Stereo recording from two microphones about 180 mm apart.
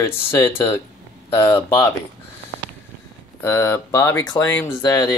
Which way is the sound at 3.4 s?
15° left (ahead or behind).